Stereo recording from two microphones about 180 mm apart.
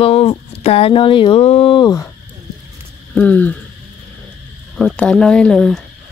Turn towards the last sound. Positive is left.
turn(degrees=0)  # may be behind; listen again after turning